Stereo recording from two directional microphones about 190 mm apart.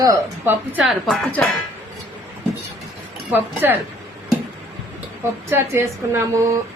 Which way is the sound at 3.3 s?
10° right (ahead or behind).